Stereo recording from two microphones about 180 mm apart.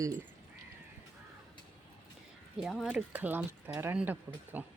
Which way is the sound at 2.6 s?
Centre (ahead or behind).